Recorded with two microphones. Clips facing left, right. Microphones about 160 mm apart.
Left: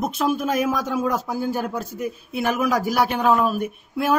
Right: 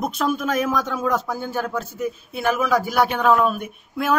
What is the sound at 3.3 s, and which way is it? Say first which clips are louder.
Speech: right 1 dB; 5° left (ahead or behind).